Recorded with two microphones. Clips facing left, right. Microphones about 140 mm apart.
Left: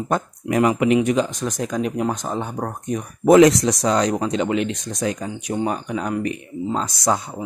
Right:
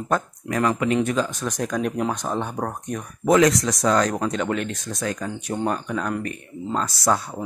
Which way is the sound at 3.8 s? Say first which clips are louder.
Even; 15° left (ahead or behind).